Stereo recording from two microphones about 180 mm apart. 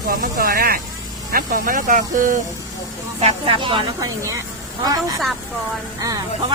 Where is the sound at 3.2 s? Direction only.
35° right (ahead or behind).